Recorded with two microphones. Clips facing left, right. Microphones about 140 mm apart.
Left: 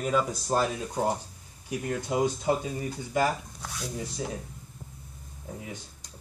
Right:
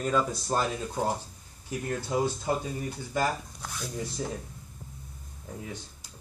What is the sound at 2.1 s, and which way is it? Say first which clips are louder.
Speech: left 2 dB; 15° left (ahead or behind).